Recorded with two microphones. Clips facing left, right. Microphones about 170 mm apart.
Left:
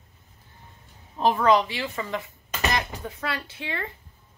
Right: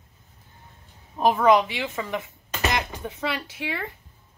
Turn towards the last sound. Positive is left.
turn(degrees=-10)  # may be behind; listen again after turning